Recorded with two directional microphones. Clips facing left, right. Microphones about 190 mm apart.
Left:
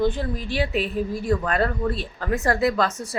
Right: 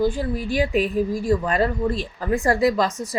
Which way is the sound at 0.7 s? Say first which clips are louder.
Right 4 dB; 40° right (ahead or behind).